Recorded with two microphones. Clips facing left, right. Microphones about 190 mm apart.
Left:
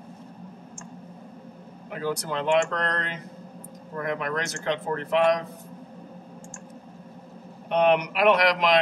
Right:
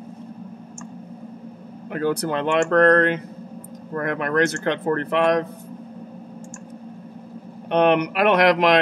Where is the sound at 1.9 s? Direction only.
60° right (ahead or behind).